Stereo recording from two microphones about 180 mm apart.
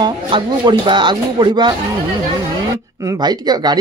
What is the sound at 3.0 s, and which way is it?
Speech, 20° right (ahead or behind).